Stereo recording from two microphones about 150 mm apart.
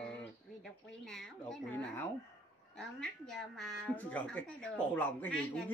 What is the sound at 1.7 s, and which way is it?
Speech, 15° left (ahead or behind).